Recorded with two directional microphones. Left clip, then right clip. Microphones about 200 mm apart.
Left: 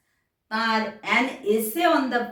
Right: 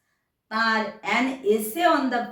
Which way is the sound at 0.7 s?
Centre (ahead or behind).